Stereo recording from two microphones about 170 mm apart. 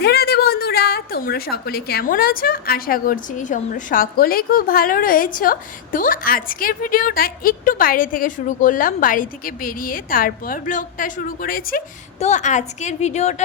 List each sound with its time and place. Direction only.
0.0 s a woman's voice: 70° left (ahead or behind)
12.2 s a woman's voice: 45° left (ahead or behind)